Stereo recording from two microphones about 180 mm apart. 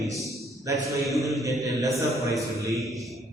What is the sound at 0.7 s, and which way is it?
Speech, 15° right (ahead or behind).